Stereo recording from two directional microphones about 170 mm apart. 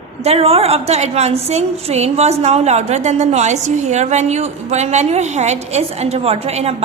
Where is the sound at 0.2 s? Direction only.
35° right (ahead or behind).